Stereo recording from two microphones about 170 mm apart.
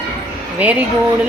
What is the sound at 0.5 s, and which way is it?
Speech, 10° right (ahead or behind).